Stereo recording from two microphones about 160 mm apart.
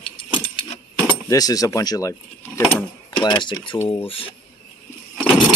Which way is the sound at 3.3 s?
30° left (ahead or behind).